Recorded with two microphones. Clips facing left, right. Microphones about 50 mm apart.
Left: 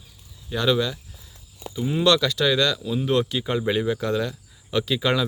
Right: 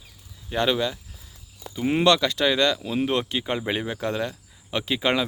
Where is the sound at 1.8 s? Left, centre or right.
Right.